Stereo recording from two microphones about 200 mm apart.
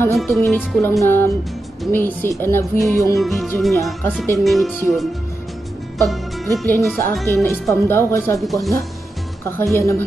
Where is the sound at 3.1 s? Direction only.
Centre (ahead or behind).